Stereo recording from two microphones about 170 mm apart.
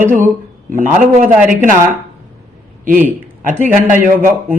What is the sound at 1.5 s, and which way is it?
Speech, 50° right (ahead or behind).